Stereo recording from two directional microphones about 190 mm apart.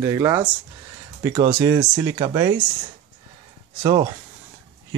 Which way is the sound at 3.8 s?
20° right (ahead or behind).